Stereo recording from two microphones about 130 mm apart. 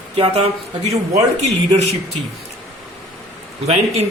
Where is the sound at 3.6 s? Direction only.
55° right (ahead or behind).